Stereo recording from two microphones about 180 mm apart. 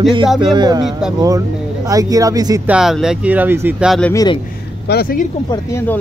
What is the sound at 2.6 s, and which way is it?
Speech, 5° right (ahead or behind).